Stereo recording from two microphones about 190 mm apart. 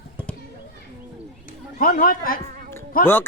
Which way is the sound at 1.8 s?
50° left (ahead or behind).